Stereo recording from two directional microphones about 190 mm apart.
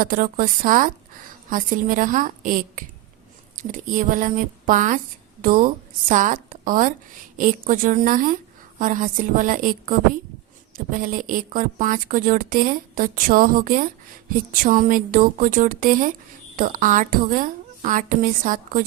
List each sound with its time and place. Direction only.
0.0 s a woman's voice: 45° right (ahead or behind)